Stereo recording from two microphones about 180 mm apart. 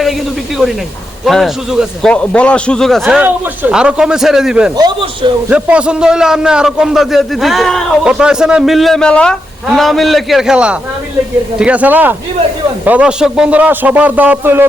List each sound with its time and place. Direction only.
1.2 s a man's voice: centre (ahead or behind)
4.8 s speech: 25° right (ahead or behind)
5.5 s a man's voice: 5° right (ahead or behind)